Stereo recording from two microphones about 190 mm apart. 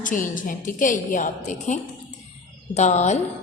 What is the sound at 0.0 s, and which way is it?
A woman's voice, 45° left (ahead or behind).